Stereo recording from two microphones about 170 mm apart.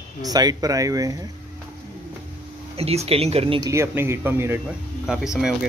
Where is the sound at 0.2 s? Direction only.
25° right (ahead or behind).